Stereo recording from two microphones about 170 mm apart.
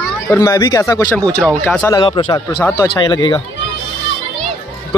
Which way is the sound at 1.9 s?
25° left (ahead or behind).